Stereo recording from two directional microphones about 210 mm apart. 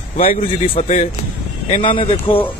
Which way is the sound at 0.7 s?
35° left (ahead or behind).